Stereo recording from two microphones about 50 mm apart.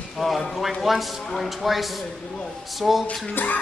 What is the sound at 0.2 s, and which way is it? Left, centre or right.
Speech, centre.